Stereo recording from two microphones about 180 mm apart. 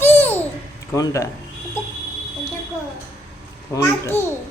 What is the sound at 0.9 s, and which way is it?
Speech, 20° left (ahead or behind).